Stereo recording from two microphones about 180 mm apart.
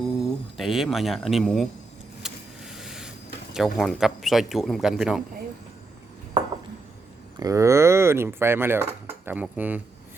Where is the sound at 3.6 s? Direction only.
Centre (ahead or behind).